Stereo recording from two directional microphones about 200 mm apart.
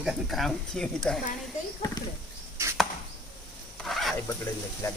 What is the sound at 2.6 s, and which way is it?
Chop, 15° right (ahead or behind).